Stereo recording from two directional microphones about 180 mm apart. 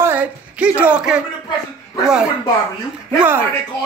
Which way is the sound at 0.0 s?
10° right (ahead or behind).